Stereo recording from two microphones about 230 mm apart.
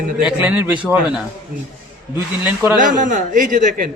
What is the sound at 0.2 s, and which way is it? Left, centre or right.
Speech, centre.